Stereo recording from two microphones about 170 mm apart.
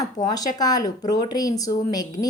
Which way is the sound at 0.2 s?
25° left (ahead or behind).